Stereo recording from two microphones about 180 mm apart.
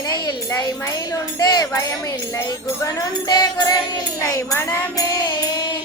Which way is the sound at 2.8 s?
20° left (ahead or behind).